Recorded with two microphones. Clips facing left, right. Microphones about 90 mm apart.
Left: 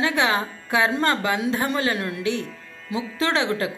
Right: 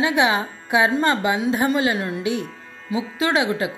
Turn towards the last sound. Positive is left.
turn(degrees=-15)  # may be behind; listen again after turning